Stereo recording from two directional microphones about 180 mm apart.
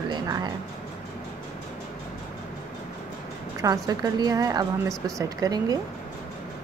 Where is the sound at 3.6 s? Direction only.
20° right (ahead or behind).